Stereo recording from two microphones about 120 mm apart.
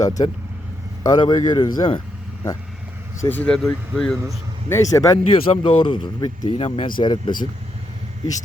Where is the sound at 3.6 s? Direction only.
Centre (ahead or behind).